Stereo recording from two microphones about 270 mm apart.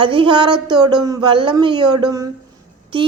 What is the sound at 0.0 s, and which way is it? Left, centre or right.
A woman's voice, centre.